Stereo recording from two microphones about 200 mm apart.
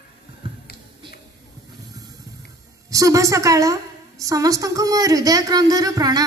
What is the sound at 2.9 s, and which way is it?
A woman's voice, 15° right (ahead or behind).